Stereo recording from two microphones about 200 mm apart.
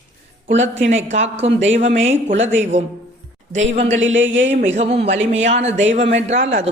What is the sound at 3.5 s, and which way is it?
Speech, 70° right (ahead or behind).